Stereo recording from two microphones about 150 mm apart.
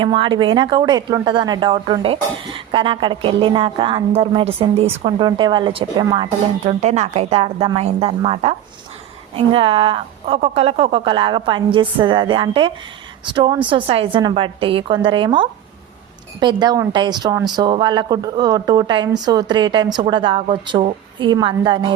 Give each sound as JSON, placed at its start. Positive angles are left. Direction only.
{"t": 0.0, "sound": "speech", "side_deg": -35}
{"t": 6.7, "sound": "speech", "side_deg": -50}